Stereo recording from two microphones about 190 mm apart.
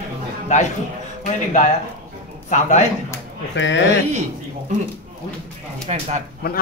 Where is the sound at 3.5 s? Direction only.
70° left (ahead or behind).